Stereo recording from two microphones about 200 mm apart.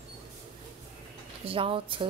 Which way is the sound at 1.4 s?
25° right (ahead or behind).